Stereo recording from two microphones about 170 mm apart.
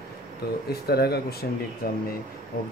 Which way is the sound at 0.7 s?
70° left (ahead or behind).